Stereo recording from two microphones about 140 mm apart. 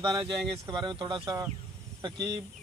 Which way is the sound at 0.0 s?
30° right (ahead or behind).